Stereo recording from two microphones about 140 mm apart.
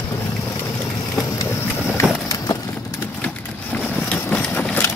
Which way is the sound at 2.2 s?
25° left (ahead or behind).